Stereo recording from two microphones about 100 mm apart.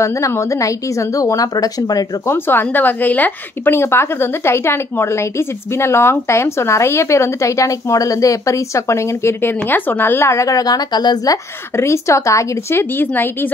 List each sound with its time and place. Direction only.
0.0 s a woman's voice: 30° left (ahead or behind)
2.2 s a woman's voice: 20° left (ahead or behind); by 11.3 s 45° left (ahead or behind)
11.7 s speech: 30° left (ahead or behind)